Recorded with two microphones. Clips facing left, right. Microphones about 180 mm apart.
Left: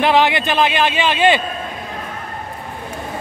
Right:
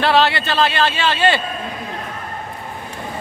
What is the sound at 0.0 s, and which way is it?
A man's voice, 15° left (ahead or behind).